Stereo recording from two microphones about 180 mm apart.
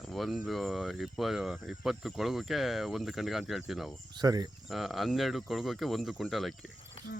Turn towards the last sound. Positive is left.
turn(degrees=0)  # may be behind; listen again after turning